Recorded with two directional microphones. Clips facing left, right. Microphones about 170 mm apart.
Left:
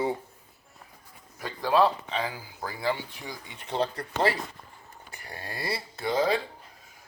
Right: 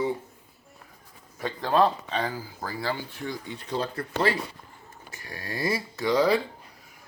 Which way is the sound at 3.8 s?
30° left (ahead or behind).